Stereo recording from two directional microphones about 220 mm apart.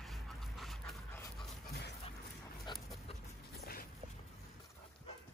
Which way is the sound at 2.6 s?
15° left (ahead or behind).